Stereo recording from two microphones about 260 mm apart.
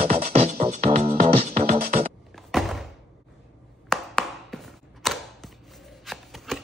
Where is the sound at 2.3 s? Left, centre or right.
Centre.